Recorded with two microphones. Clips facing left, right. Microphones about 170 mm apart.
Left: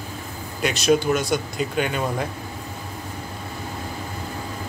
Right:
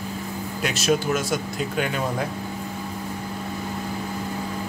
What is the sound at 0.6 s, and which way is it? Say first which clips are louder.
Speech: left 3 dB; centre (ahead or behind).